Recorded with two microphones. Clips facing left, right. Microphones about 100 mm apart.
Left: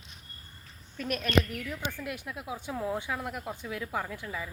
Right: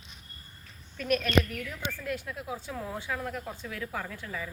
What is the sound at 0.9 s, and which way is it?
Speech, 25° left (ahead or behind).